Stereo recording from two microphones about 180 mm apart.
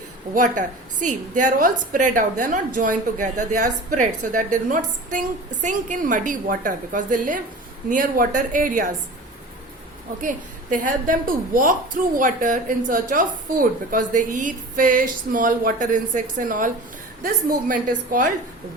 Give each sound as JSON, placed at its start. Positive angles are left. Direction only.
{"t": 0.3, "sound": "a woman's voice", "side_deg": -45}
{"t": 10.2, "sound": "a woman's voice", "side_deg": -45}